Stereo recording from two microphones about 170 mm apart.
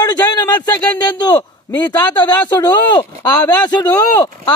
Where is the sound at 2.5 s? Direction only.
25° left (ahead or behind).